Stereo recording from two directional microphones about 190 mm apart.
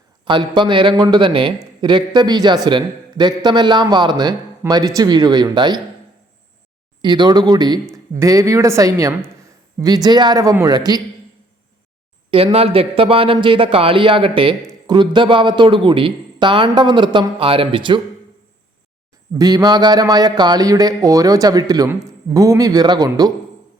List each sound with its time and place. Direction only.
0.3 s a man's voice: 25° right (ahead or behind)
7.0 s a man's voice: 25° right (ahead or behind)
12.3 s a man's voice: 30° right (ahead or behind)
19.3 s a man's voice: 20° right (ahead or behind)